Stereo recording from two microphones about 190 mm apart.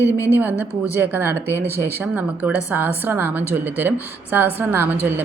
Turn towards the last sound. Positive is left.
turn(degrees=-10)  # may be behind; listen again after turning